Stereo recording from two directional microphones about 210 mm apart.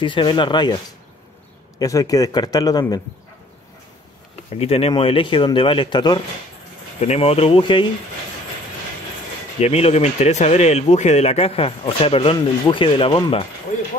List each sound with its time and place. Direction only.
0.0 s speech: 25° left (ahead or behind)
1.8 s speech: 15° left (ahead or behind)
4.6 s speech: 30° left (ahead or behind)
9.6 s speech: 30° left (ahead or behind)